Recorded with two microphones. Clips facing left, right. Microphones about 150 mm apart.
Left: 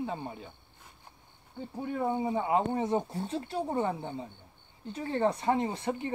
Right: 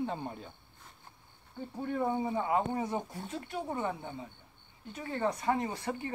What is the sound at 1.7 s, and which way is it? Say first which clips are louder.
Speech: left 1 dB; 10° left (ahead or behind).